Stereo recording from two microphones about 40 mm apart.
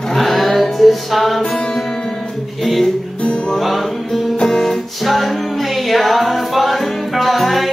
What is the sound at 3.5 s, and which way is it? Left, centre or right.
Music, centre.